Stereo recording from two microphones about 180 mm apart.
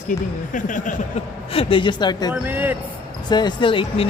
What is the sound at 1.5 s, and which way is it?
Speech, 30° left (ahead or behind).